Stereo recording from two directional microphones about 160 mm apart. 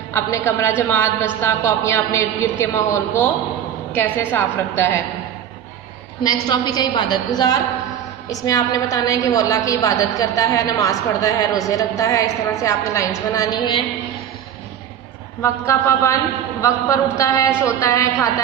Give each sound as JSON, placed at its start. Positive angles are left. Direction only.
{"t": 0.1, "sound": "a woman's voice", "side_deg": 15}
{"t": 6.2, "sound": "a woman's voice", "side_deg": 25}
{"t": 15.4, "sound": "a woman's voice", "side_deg": 15}